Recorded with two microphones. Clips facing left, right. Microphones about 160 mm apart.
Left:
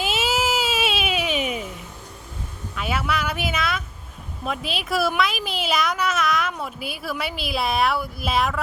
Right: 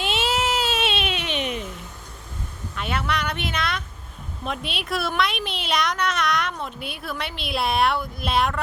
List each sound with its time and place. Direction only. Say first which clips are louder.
0.0 s baby cry: left 1 dB; 5° left (ahead or behind)
2.7 s a sound: left 1 dB; 5° left (ahead or behind)
4.4 s speech: left 2 dB; centre (ahead or behind)